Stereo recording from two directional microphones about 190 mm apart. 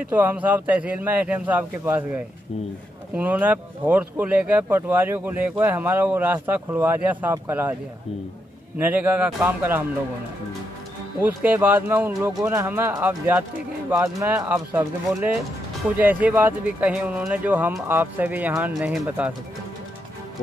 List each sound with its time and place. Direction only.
0.1 s speech: 10° right (ahead or behind)
3.2 s speech: 10° right (ahead or behind)
8.7 s speech: 10° right (ahead or behind)
11.2 s speech: 10° right (ahead or behind)
16.0 s speech: 10° right (ahead or behind)